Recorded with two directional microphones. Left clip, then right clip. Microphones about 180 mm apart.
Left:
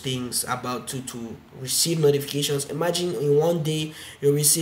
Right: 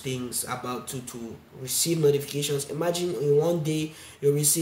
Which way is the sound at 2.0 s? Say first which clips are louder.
Left 2 dB; 5° left (ahead or behind).